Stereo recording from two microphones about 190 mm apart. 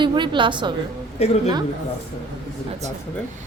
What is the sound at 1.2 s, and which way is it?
Speech, 35° left (ahead or behind).